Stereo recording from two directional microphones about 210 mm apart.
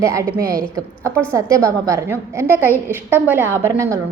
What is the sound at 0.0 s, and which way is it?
A woman's voice, 15° right (ahead or behind).